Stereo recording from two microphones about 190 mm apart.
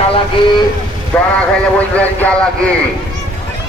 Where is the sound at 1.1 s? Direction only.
5° left (ahead or behind).